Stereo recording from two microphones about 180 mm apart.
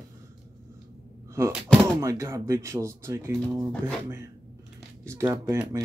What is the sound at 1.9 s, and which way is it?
Speech, 15° right (ahead or behind).